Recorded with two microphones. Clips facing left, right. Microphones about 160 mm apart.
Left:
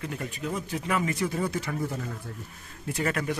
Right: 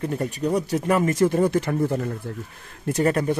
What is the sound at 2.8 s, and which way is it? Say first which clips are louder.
Speech: right 8 dB; 40° right (ahead or behind).